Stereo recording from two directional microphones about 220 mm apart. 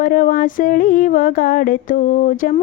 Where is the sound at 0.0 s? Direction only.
40° left (ahead or behind).